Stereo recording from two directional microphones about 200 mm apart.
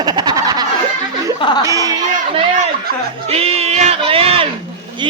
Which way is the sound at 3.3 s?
30° right (ahead or behind).